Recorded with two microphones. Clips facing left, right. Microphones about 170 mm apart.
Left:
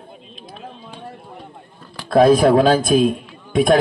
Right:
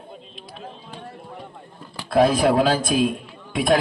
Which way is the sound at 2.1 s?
45° left (ahead or behind).